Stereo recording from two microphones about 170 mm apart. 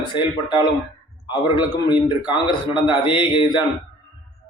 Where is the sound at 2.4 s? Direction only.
30° left (ahead or behind).